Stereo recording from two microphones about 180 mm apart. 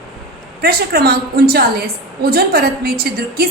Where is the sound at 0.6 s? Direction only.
60° right (ahead or behind).